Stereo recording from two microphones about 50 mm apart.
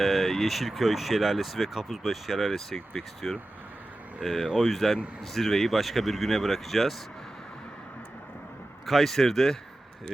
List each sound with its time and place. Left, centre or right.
0.0 s speech: centre
8.9 s speech: centre